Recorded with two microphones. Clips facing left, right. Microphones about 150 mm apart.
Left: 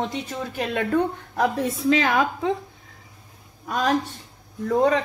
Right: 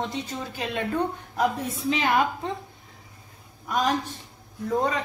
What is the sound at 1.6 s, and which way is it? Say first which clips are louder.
Speech: left 6 dB; 90° left.